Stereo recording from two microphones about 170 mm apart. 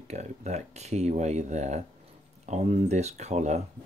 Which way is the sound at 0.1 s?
40° right (ahead or behind).